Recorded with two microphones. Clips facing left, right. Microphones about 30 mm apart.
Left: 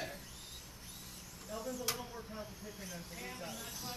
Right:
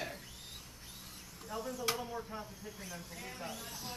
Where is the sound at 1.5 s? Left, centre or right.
Centre.